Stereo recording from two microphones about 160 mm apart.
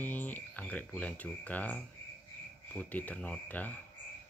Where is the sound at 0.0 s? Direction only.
10° left (ahead or behind).